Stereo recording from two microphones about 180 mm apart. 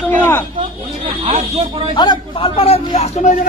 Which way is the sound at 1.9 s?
25° left (ahead or behind).